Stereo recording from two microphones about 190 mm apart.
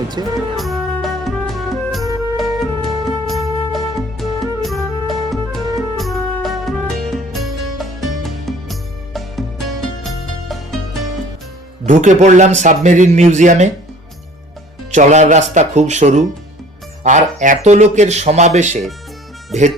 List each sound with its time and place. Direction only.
0.2 s speech: 20° right (ahead or behind)
0.5 s music: centre (ahead or behind)
11.9 s speech: 40° right (ahead or behind)
14.9 s speech: 40° right (ahead or behind)